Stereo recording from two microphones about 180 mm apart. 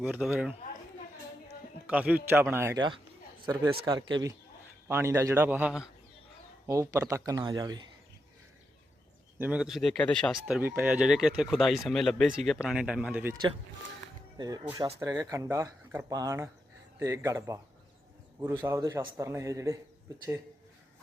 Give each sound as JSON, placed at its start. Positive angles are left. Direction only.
{"t": 0.0, "sound": "speech", "side_deg": -10}
{"t": 1.9, "sound": "a man's voice", "side_deg": -5}
{"t": 6.7, "sound": "speech", "side_deg": -15}
{"t": 9.4, "sound": "speech", "side_deg": -5}
{"t": 10.6, "sound": "speech", "side_deg": -10}
{"t": 14.3, "sound": "speech", "side_deg": -20}